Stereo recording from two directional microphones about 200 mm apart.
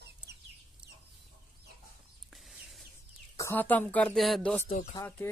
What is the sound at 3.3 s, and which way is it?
Speech, 10° left (ahead or behind).